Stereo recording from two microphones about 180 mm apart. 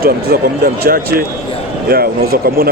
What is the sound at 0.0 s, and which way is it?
Speech, 55° right (ahead or behind).